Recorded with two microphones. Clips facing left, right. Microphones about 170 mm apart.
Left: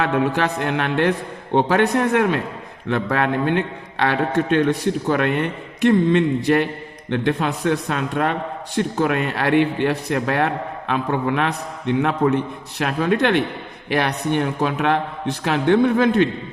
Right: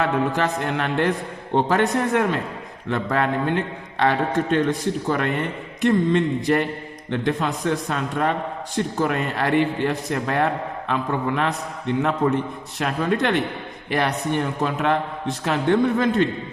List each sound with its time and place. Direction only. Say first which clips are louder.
0.0 s a man's voice: left 2 dB; 65° left (ahead or behind)
5.8 s a man's voice: left 3 dB; 65° left (ahead or behind)